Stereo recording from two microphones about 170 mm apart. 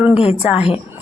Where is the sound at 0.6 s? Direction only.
35° left (ahead or behind).